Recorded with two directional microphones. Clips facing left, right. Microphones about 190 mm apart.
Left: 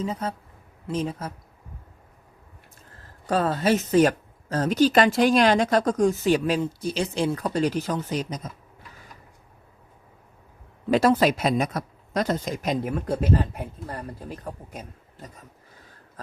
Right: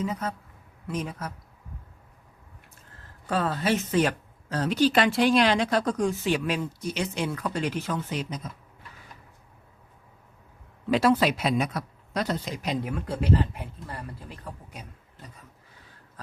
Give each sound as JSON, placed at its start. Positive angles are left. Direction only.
{"t": 0.0, "sound": "speech", "side_deg": 30}
{"t": 3.2, "sound": "speech", "side_deg": 40}
{"t": 10.8, "sound": "speech", "side_deg": 45}